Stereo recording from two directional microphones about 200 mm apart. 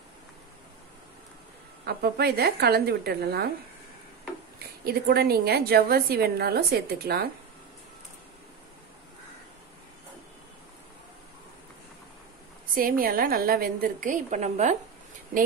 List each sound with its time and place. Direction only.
1.9 s a woman's voice: 50° right (ahead or behind)
4.8 s a woman's voice: 50° right (ahead or behind)
12.7 s a woman's voice: 45° right (ahead or behind)